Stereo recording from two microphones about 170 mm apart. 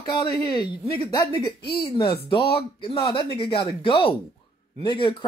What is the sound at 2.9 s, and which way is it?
A woman's voice, 30° left (ahead or behind).